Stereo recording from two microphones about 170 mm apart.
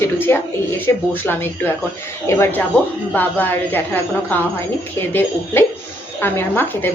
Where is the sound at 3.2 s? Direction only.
10° left (ahead or behind).